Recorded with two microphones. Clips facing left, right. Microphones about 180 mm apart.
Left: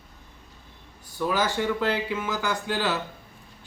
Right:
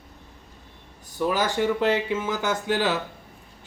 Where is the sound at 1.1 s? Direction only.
15° right (ahead or behind).